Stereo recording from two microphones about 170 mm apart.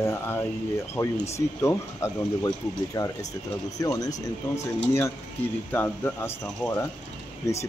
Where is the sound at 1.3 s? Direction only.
15° left (ahead or behind).